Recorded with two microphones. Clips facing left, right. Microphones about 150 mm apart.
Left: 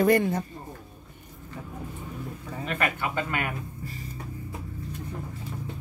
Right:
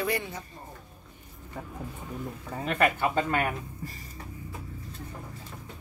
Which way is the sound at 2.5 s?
35° right (ahead or behind).